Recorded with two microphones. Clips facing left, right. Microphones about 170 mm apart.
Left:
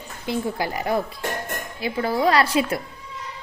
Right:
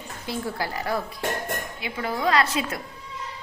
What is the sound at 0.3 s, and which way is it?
Speech, 20° left (ahead or behind).